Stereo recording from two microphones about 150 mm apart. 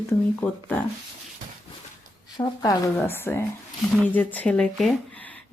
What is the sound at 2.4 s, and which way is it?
Speech, 25° left (ahead or behind).